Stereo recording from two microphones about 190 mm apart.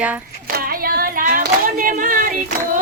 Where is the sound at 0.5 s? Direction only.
50° right (ahead or behind).